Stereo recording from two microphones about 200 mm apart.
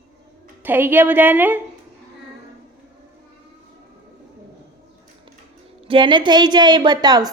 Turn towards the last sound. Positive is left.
turn(degrees=-20)  # may be behind; listen again after turning